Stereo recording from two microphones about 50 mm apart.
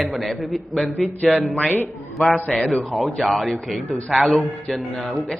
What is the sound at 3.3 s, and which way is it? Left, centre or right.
Speech, centre.